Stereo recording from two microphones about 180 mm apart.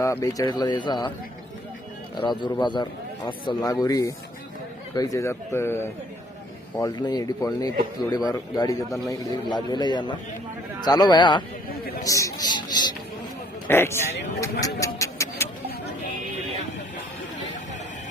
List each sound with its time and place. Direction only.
0.0 s a man's voice: 15° left (ahead or behind)
2.1 s a man's voice: 25° left (ahead or behind)
14.6 s a sound: 15° left (ahead or behind)